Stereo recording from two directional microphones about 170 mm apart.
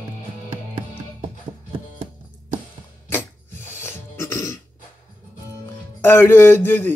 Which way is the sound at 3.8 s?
15° left (ahead or behind).